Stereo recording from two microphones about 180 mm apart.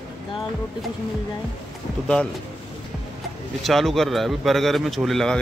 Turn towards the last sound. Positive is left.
turn(degrees=0)  # may be behind; listen again after turning